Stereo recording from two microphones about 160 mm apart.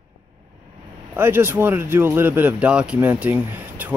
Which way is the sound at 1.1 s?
15° right (ahead or behind).